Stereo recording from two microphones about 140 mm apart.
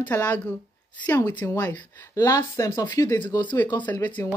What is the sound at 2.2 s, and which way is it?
Speech, 25° left (ahead or behind).